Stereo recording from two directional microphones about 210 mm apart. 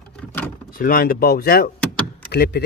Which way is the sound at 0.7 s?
45° left (ahead or behind).